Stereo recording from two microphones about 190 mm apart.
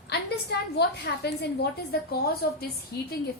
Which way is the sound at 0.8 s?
60° left (ahead or behind).